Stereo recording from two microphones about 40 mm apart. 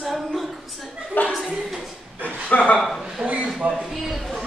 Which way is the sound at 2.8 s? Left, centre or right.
Centre.